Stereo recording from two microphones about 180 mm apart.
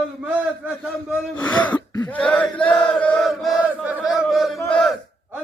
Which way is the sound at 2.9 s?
5° left (ahead or behind).